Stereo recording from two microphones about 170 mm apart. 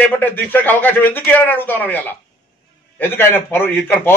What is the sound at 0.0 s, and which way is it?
A man's voice, 10° left (ahead or behind).